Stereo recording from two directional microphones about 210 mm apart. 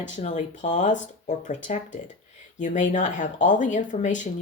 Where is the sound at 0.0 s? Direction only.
35° left (ahead or behind).